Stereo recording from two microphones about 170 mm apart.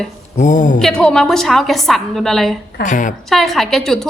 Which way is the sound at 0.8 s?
5° left (ahead or behind).